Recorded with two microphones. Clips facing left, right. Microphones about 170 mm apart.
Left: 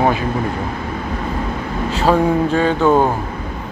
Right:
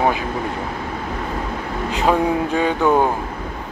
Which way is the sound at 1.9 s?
15° right (ahead or behind).